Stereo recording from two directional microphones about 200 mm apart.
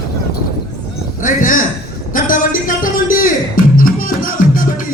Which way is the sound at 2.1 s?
40° left (ahead or behind).